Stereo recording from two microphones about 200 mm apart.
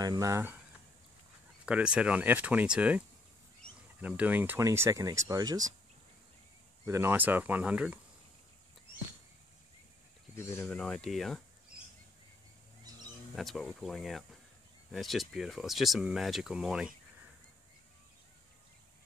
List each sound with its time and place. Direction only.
0.0 s speech: 20° right (ahead or behind)
1.7 s speech: 5° right (ahead or behind)
4.0 s speech: 10° right (ahead or behind)
6.9 s speech: 10° right (ahead or behind)
10.3 s speech: 10° left (ahead or behind)
13.3 s speech: centre (ahead or behind)